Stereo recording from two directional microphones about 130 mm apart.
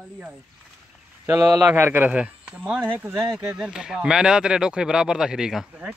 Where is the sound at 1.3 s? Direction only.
30° right (ahead or behind).